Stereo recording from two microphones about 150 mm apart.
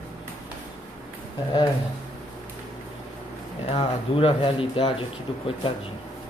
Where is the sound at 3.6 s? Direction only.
35° left (ahead or behind).